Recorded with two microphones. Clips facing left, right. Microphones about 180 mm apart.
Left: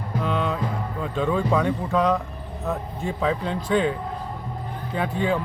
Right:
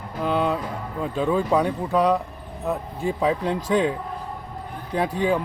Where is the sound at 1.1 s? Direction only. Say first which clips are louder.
Right 1 dB; 10° right (ahead or behind).